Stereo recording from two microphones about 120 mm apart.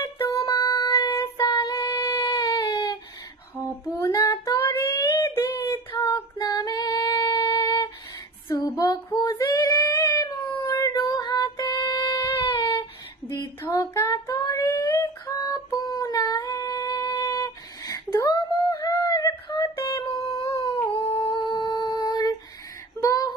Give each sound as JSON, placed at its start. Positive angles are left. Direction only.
{"t": 0.2, "sound": "music", "side_deg": 30}
{"t": 1.5, "sound": "child singing", "side_deg": 35}
{"t": 3.8, "sound": "female singing", "side_deg": 30}
{"t": 13.3, "sound": "female singing", "side_deg": 25}
{"t": 20.4, "sound": "a sound", "side_deg": 30}
{"t": 21.3, "sound": "humming", "side_deg": 40}
{"t": 22.9, "sound": "a sound", "side_deg": 30}